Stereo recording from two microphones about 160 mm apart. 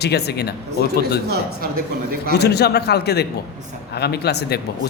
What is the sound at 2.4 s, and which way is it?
A man's voice, 90° left.